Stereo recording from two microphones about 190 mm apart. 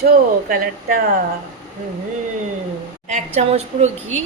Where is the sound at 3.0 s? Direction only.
40° right (ahead or behind).